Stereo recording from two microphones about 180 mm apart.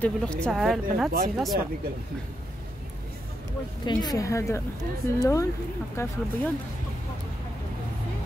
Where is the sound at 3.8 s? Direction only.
20° left (ahead or behind).